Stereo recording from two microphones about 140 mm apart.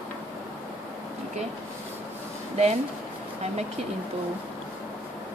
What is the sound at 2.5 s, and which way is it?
Speech, 50° right (ahead or behind).